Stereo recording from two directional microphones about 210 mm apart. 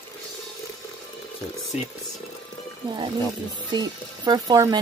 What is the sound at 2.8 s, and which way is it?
Music, 25° right (ahead or behind).